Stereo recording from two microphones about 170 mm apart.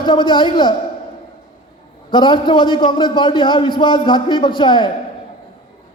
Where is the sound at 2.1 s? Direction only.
25° left (ahead or behind).